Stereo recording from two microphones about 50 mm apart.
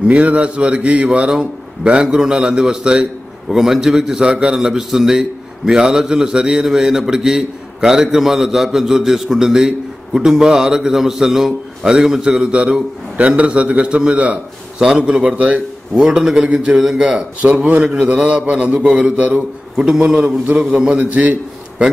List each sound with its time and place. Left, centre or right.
0.1 s a man's voice: right
16.7 s a man's voice: centre
17.4 s a man's voice: right
19.8 s a man's voice: centre
21.0 s a man's voice: right